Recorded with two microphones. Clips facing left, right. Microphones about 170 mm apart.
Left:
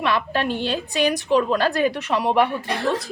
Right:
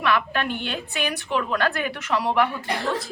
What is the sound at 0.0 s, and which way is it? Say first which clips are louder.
A woman's voice: left 1 dB; 30° left (ahead or behind).